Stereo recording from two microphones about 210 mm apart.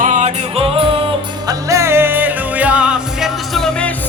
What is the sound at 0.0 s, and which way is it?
Music, 35° right (ahead or behind).